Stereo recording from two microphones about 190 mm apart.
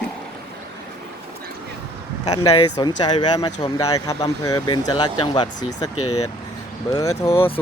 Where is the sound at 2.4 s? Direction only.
25° left (ahead or behind).